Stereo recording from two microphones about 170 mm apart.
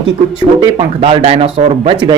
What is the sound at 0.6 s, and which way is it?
Speech, 35° right (ahead or behind).